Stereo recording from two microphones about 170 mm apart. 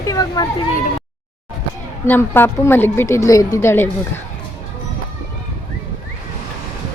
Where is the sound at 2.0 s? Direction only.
10° left (ahead or behind).